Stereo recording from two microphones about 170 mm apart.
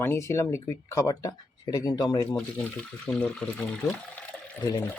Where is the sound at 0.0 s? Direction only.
15° left (ahead or behind).